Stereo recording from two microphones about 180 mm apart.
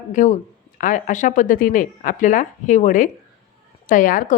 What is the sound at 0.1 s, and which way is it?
A woman's voice, 45° left (ahead or behind).